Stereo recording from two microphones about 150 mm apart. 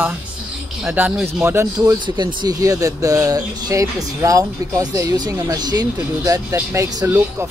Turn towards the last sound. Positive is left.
turn(degrees=-20)  # may be behind; listen again after turning